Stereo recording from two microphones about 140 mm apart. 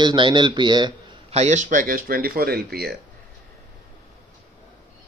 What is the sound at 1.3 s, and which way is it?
Speech, 55° right (ahead or behind).